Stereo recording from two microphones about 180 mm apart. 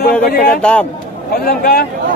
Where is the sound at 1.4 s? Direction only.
55° left (ahead or behind).